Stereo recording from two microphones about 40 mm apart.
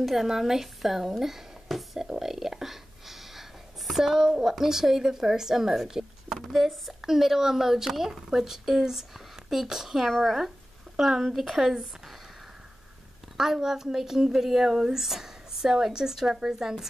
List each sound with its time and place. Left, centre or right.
0.0 s speech: centre
2.0 s a sound: centre
3.9 s speech: centre
6.4 s speech: centre
13.4 s speech: centre